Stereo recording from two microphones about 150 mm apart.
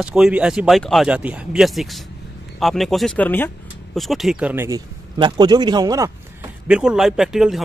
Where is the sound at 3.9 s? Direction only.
Centre (ahead or behind).